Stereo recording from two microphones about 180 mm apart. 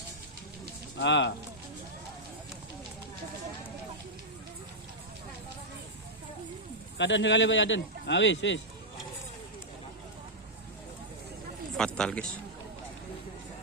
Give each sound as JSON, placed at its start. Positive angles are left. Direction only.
{"t": 0.9, "sound": "speech", "side_deg": 80}
{"t": 7.0, "sound": "speech", "side_deg": 90}
{"t": 11.8, "sound": "speech", "side_deg": 5}